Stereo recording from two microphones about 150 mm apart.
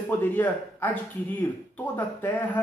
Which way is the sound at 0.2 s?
10° left (ahead or behind).